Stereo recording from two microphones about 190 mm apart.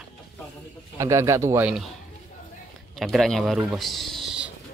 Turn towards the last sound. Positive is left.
turn(degrees=0)  # may be behind; listen again after turning